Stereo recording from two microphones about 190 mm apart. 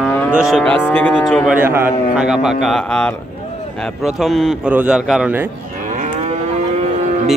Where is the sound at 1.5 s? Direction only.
10° right (ahead or behind).